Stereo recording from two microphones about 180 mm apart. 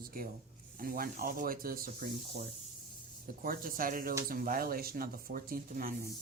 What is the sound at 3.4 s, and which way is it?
Speech, 50° right (ahead or behind).